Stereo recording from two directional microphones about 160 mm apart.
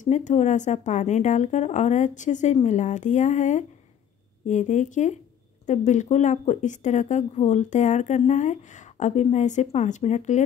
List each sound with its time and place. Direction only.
0.0 s speech: 50° left (ahead or behind)